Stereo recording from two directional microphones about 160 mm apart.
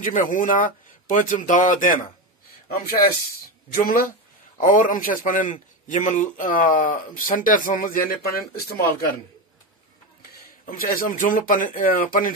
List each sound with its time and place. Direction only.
0.1 s a man's voice: 55° left (ahead or behind)
2.7 s a man's voice: 65° left (ahead or behind)
10.6 s a man's voice: 60° left (ahead or behind)